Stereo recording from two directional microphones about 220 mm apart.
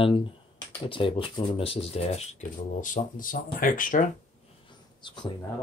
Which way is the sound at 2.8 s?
35° left (ahead or behind).